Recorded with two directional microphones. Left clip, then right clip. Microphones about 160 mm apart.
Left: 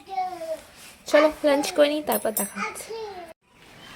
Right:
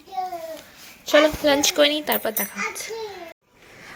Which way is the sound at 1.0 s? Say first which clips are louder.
Right 2 dB; 5° left (ahead or behind).